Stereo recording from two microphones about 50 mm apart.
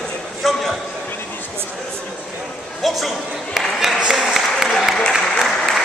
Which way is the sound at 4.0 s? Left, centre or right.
Centre.